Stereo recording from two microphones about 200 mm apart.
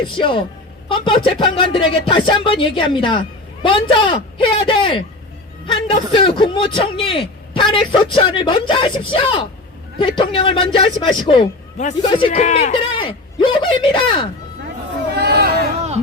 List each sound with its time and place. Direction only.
0.2 s speech: 25° left (ahead or behind)
12.3 s speech: 35° left (ahead or behind)
15.1 s a sound: 55° right (ahead or behind)